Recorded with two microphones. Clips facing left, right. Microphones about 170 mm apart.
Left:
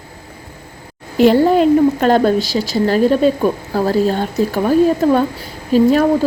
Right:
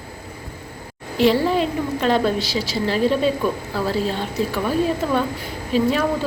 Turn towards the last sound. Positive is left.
turn(degrees=40)  # may be behind; listen again after turning